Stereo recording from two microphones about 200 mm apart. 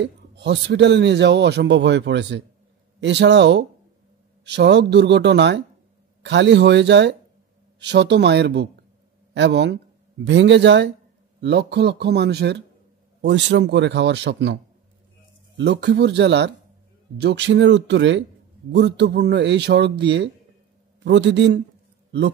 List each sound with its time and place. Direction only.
0.0 s speech: 60° right (ahead or behind)